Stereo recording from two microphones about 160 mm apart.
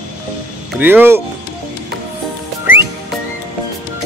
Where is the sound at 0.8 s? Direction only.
15° right (ahead or behind).